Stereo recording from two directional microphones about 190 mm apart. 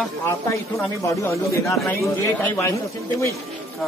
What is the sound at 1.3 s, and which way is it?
Speech, 15° left (ahead or behind).